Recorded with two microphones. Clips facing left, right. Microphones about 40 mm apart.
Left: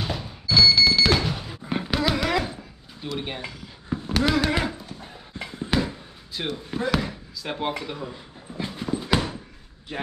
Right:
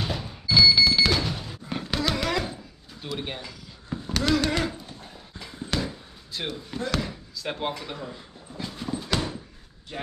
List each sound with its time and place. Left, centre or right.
0.0 s thunk: centre
1.1 s a sound: centre
3.0 s speech: centre
3.9 s a sound: centre
6.5 s speech: centre
8.7 s clip-clop: centre